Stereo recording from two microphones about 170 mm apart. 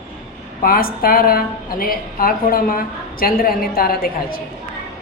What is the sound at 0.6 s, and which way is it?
A woman's voice, 60° left (ahead or behind).